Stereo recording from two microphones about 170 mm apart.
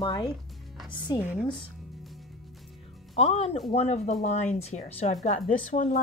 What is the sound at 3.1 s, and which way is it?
A woman's voice, 35° left (ahead or behind).